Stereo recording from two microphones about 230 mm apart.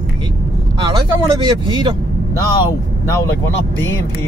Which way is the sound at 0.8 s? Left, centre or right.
Centre.